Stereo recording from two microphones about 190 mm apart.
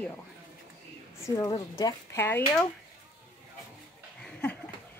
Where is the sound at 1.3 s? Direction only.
20° left (ahead or behind).